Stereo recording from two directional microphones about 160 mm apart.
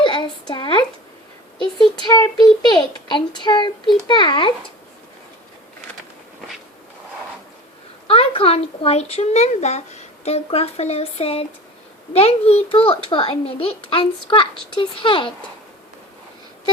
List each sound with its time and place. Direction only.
0.0 s a sound: 30° left (ahead or behind)
1.8 s a child's voice: 25° left (ahead or behind)
8.0 s a woman's voice: 35° left (ahead or behind)